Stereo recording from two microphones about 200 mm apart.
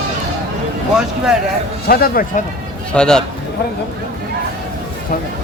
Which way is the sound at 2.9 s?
5° left (ahead or behind).